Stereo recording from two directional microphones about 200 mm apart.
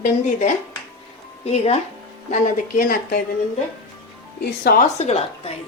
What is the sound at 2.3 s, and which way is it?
Speech, 40° left (ahead or behind).